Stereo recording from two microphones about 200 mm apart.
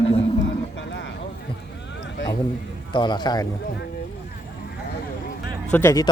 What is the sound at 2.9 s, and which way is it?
Speech, 25° left (ahead or behind).